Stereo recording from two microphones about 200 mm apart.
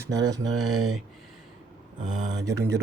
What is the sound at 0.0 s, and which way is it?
Speech, 15° right (ahead or behind).